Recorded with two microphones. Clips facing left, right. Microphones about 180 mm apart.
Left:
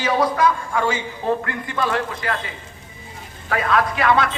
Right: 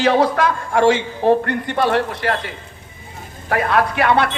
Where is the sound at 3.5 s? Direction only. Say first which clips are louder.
Right 3 dB; 60° right (ahead or behind).